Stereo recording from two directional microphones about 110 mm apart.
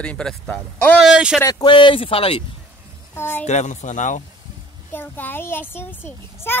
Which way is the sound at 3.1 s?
20° left (ahead or behind).